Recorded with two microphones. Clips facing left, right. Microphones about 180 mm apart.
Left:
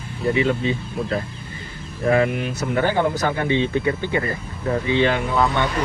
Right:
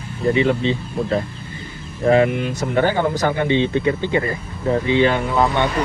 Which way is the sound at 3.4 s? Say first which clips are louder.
Right 2 dB; 25° right (ahead or behind).